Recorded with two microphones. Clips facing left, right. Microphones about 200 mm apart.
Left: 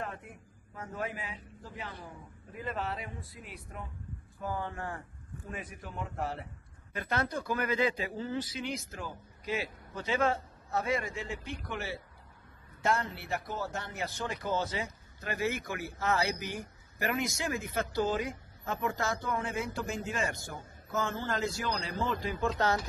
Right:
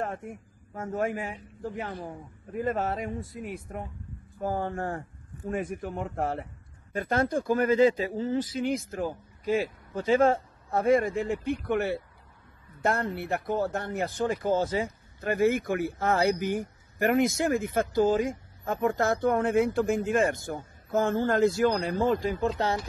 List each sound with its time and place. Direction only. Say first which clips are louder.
0.0 s a man's voice: right 7 dB; 45° right (ahead or behind)
22.6 s speech: right 1 dB; 30° right (ahead or behind)